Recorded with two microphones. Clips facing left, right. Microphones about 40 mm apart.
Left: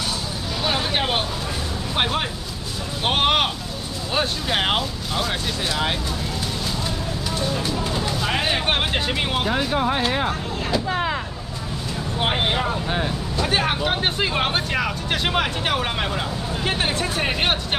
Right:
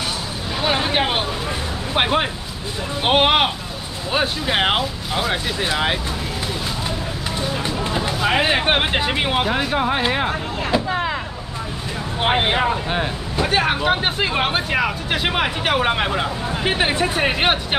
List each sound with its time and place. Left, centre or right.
0.7 s vehicle: centre
2.0 s speech: right
7.5 s speech: right; by 11.1 s centre
12.2 s speech: centre